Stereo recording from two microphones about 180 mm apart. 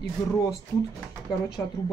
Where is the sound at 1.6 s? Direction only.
10° left (ahead or behind).